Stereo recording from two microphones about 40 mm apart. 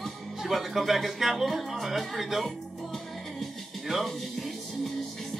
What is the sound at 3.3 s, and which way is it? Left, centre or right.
Music, centre.